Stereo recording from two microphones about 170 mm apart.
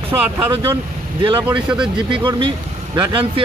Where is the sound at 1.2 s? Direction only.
30° right (ahead or behind).